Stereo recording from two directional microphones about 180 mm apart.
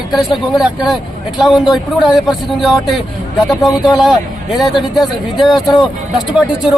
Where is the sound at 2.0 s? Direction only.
Centre (ahead or behind).